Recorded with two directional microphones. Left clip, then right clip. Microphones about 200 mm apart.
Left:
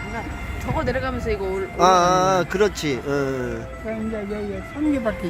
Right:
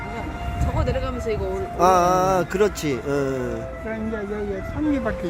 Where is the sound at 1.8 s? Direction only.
Centre (ahead or behind).